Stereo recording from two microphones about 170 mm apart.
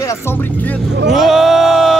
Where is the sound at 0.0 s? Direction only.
15° left (ahead or behind).